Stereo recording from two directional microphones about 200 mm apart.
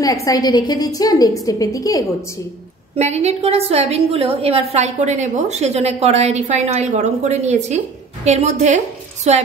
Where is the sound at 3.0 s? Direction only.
35° right (ahead or behind).